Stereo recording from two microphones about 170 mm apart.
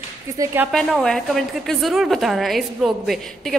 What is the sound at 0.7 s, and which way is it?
A woman's voice, centre (ahead or behind).